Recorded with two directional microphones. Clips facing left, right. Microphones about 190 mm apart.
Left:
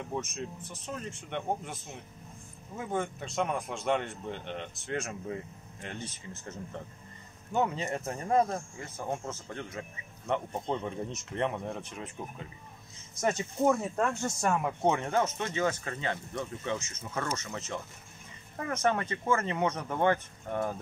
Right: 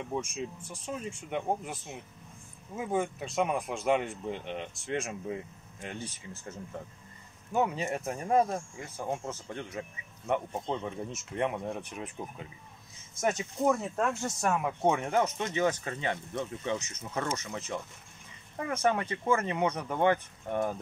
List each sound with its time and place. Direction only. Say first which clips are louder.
0.0 s speech: right 1 dB; centre (ahead or behind)
10.5 s speech: left 1 dB; centre (ahead or behind)
13.2 s speech: left 1 dB; centre (ahead or behind); by 17.5 s 20° right (ahead or behind)
18.6 s speech: right 1 dB; 10° right (ahead or behind)